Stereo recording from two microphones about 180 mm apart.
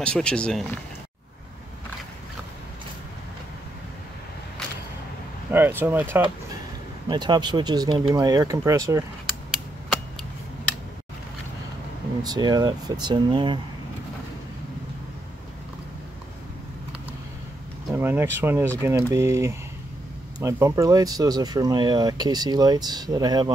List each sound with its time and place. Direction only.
0.0 s speech: 5° left (ahead or behind)
5.5 s speech: 10° right (ahead or behind)
7.1 s speech: 25° right (ahead or behind)
12.2 s speech: 20° right (ahead or behind)
17.9 s speech: 10° right (ahead or behind)